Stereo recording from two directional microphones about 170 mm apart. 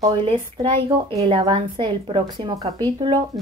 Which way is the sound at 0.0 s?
30° right (ahead or behind).